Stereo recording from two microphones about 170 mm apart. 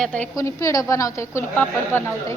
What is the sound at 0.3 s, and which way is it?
A woman's voice, 20° left (ahead or behind).